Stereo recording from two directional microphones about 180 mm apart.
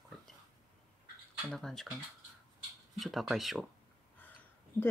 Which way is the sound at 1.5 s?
5° left (ahead or behind).